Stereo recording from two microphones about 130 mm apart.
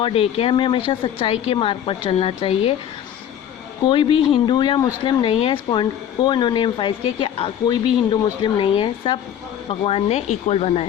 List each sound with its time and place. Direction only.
0.0 s speech: 45° left (ahead or behind)
3.8 s speech: 40° left (ahead or behind); by 10.8 s 55° left (ahead or behind)